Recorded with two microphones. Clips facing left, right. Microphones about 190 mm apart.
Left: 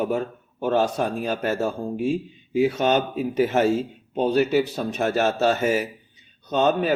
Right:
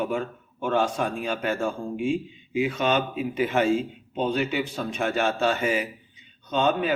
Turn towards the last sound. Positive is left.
turn(degrees=40)  # may be behind; listen again after turning